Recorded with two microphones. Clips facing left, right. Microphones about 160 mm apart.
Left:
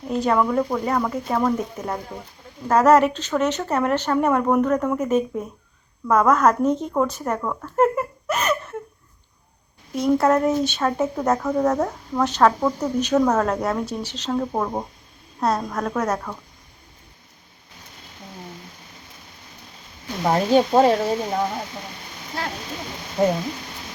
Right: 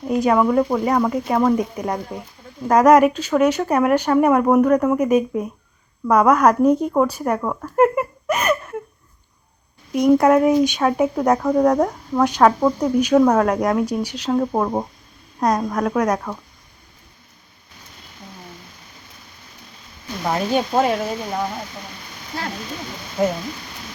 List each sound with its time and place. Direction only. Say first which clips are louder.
0.1 s a woman's voice: right 4 dB; 10° right (ahead or behind)
9.9 s speech: right 4 dB; 15° right (ahead or behind)
20.2 s speech: left 3 dB; 35° left (ahead or behind)